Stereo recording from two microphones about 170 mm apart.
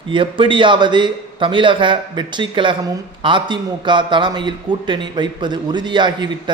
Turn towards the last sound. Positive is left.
turn(degrees=-25)  # may be behind; listen again after turning